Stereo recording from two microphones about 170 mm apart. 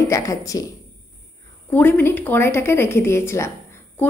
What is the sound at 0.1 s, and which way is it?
Speech, 20° left (ahead or behind).